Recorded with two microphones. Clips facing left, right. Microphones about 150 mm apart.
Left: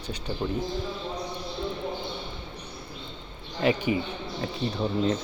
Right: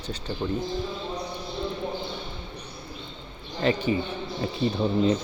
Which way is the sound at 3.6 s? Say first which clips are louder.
Even; 15° left (ahead or behind).